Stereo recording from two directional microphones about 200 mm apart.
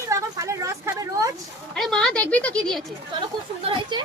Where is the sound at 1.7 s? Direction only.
Centre (ahead or behind).